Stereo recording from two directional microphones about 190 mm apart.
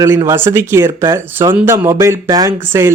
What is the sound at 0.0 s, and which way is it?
Speech, 15° right (ahead or behind).